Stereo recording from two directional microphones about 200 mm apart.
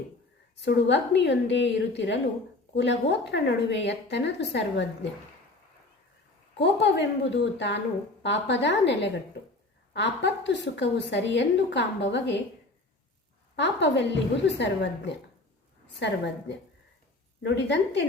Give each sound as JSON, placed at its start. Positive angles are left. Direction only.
{"t": 0.6, "sound": "a woman's voice", "side_deg": 60}
{"t": 6.6, "sound": "a woman's voice", "side_deg": 60}
{"t": 13.6, "sound": "a woman's voice", "side_deg": 60}
{"t": 17.4, "sound": "a woman's voice", "side_deg": 60}